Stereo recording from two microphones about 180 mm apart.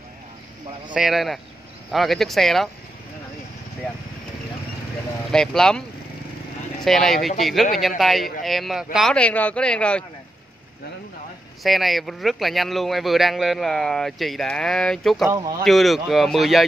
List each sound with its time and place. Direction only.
0.9 s speech: centre (ahead or behind)
5.3 s speech: 5° left (ahead or behind)
11.6 s speech: centre (ahead or behind)